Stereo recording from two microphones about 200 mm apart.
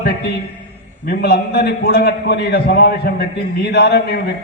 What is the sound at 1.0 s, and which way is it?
A man's voice, 50° left (ahead or behind).